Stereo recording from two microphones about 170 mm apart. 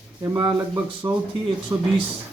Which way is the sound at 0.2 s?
20° right (ahead or behind).